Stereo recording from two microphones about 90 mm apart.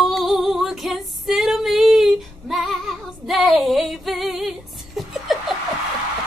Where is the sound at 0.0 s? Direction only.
Centre (ahead or behind).